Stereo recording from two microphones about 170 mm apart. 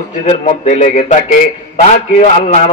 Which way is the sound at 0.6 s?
45° left (ahead or behind).